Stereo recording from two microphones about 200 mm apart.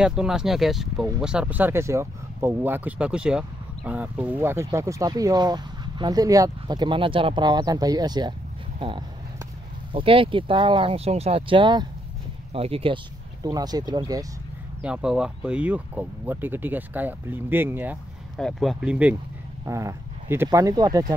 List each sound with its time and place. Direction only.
0.0 s speech: 5° right (ahead or behind); by 14.2 s 20° right (ahead or behind)
14.8 s speech: 5° right (ahead or behind)
18.4 s speech: centre (ahead or behind); by 21.0 s 20° right (ahead or behind)